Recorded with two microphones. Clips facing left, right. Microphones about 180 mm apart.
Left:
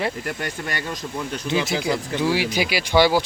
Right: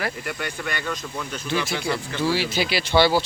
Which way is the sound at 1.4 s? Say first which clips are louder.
Left 3 dB; 20° left (ahead or behind).